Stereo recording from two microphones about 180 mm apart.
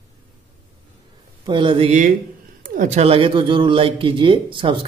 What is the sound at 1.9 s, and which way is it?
Speech, 45° right (ahead or behind).